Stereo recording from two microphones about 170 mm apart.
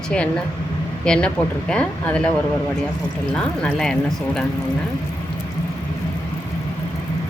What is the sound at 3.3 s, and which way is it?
A woman's voice, 5° left (ahead or behind).